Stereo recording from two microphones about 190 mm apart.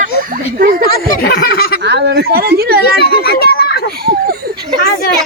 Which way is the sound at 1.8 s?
60° right (ahead or behind).